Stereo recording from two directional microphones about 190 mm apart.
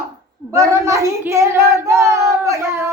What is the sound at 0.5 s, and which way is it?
Speech, 15° right (ahead or behind).